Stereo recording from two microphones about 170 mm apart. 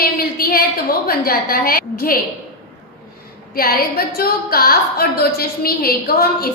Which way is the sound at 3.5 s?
60° left (ahead or behind).